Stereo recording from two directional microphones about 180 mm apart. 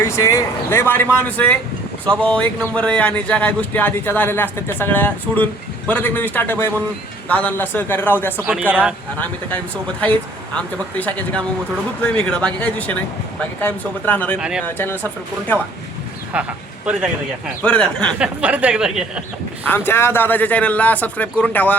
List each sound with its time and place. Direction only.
0.0 s speech: 15° left (ahead or behind)
8.7 s speech: 5° right (ahead or behind)
9.1 s speech: 10° left (ahead or behind)
14.3 s speech: 5° right (ahead or behind)
14.6 s speech: 10° left (ahead or behind)
16.3 s speech: 5° right (ahead or behind)
17.6 s speech: 5° left (ahead or behind)
18.2 s speech: 5° right (ahead or behind)
19.6 s speech: 10° left (ahead or behind)